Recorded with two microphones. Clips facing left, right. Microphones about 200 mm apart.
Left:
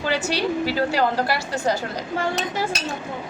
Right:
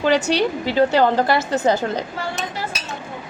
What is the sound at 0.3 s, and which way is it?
A woman's voice, 20° right (ahead or behind).